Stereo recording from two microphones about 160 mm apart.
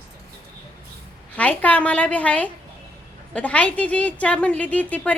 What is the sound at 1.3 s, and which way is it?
A woman's voice, 10° left (ahead or behind).